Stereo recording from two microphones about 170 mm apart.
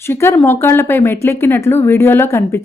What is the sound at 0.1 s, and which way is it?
A woman's voice, 15° left (ahead or behind).